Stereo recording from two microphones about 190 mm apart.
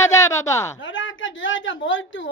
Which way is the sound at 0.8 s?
85° left.